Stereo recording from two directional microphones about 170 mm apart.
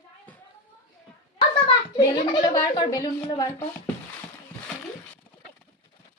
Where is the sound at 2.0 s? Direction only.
20° left (ahead or behind).